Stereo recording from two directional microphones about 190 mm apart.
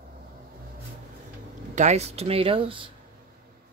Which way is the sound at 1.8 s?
35° right (ahead or behind).